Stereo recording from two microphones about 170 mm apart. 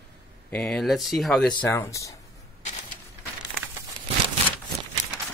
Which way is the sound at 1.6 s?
15° left (ahead or behind).